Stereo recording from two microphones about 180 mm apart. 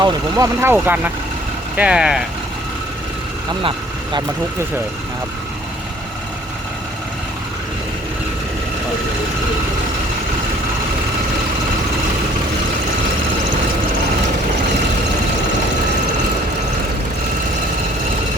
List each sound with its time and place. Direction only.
0.0 s speech: 20° right (ahead or behind)
3.6 s vehicle: 30° right (ahead or behind)